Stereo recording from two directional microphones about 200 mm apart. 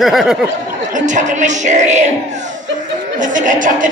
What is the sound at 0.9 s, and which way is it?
Speech, 40° right (ahead or behind).